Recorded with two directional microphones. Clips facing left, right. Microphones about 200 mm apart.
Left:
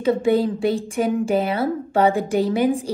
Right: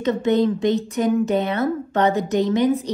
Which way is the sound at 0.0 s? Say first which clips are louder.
Even; 10° left (ahead or behind).